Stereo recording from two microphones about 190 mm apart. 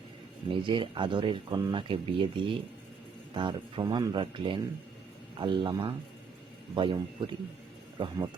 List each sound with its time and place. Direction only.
0.5 s speech: 25° right (ahead or behind)